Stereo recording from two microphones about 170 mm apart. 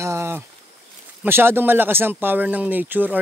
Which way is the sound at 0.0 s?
15° right (ahead or behind).